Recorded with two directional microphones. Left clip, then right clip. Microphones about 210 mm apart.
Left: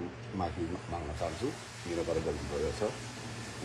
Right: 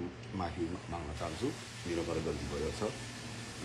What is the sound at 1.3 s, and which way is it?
Speech, centre (ahead or behind).